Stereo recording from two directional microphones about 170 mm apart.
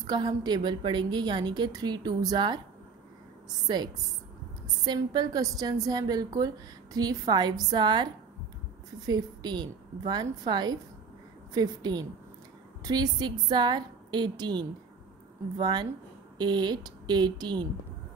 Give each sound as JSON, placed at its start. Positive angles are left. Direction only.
{"t": 0.0, "sound": "a woman's voice", "side_deg": -25}
{"t": 3.6, "sound": "a woman's voice", "side_deg": -25}